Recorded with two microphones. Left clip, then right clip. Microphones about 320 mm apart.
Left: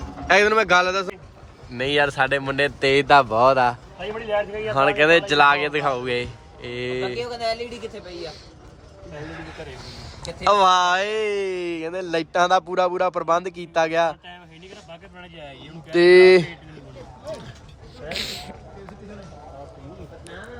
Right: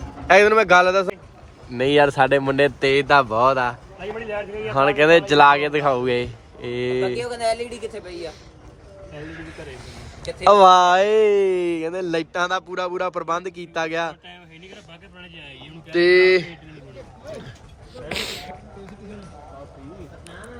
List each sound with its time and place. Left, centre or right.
0.3 s speech: centre
7.2 s a woman's voice: right
9.2 s speech: centre
15.9 s speech: centre
18.1 s speech: centre